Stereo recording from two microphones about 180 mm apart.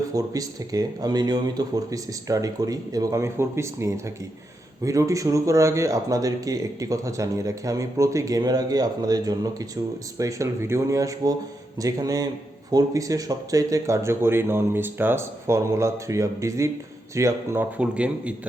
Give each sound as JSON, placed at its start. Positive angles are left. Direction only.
{"t": 0.1, "sound": "speech", "side_deg": -20}